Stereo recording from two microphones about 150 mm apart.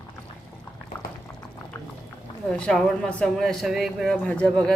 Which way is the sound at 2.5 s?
5° left (ahead or behind).